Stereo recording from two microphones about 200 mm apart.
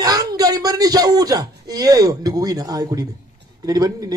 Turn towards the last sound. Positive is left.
turn(degrees=-20)  # may be behind; listen again after turning